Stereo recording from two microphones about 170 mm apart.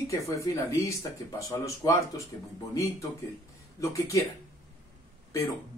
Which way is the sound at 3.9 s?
20° left (ahead or behind).